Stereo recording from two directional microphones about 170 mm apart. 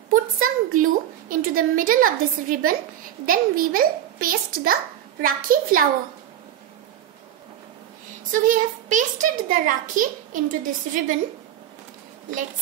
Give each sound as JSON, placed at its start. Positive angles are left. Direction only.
{"t": 0.1, "sound": "a sound", "side_deg": -55}
{"t": 3.3, "sound": "a child's voice", "side_deg": -55}
{"t": 8.3, "sound": "a woman's voice", "side_deg": -50}